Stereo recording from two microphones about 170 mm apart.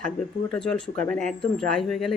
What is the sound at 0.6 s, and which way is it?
Speech, 5° left (ahead or behind).